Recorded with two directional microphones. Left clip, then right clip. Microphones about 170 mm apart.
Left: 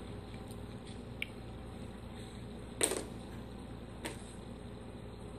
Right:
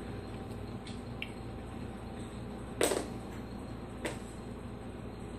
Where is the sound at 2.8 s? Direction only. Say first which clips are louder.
Right 5 dB; 25° left (ahead or behind).